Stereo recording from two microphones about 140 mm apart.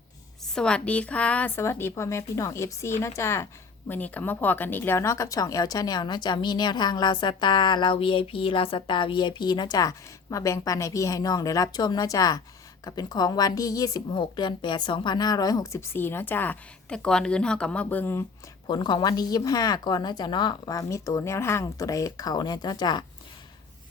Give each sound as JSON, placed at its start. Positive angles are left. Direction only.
{"t": 0.5, "sound": "speech", "side_deg": 5}
{"t": 18.7, "sound": "speech", "side_deg": 30}